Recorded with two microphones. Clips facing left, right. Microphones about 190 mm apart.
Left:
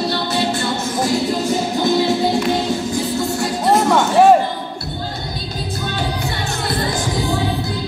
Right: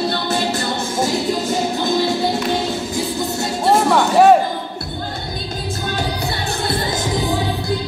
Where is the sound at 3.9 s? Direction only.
Centre (ahead or behind).